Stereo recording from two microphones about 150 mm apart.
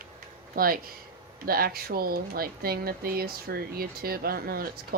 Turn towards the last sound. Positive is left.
turn(degrees=-85)